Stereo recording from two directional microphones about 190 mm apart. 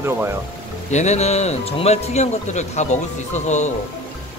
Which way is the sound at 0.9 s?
35° left (ahead or behind).